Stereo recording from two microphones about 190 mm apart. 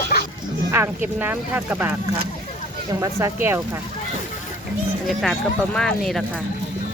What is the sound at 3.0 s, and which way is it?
Speech, 15° right (ahead or behind).